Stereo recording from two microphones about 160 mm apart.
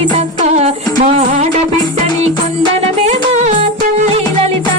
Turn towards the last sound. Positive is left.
turn(degrees=-45)  # may be behind; listen again after turning